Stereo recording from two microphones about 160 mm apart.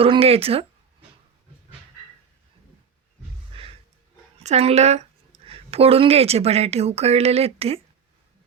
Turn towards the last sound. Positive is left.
turn(degrees=-40)  # may be behind; listen again after turning